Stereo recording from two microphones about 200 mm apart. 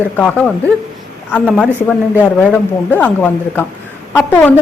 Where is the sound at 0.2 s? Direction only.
5° left (ahead or behind).